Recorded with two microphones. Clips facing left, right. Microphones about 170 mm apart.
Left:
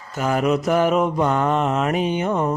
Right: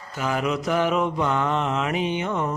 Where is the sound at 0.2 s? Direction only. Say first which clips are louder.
Left 5 dB; 45° left (ahead or behind).